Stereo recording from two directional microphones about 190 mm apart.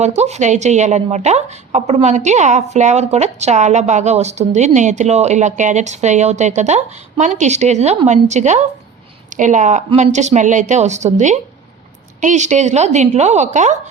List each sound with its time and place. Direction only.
0.0 s a woman's voice: 35° right (ahead or behind)